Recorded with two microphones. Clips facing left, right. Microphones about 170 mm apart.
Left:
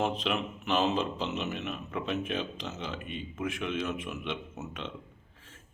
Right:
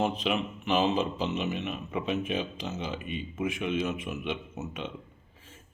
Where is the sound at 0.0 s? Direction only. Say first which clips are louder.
Right 2 dB; 5° right (ahead or behind).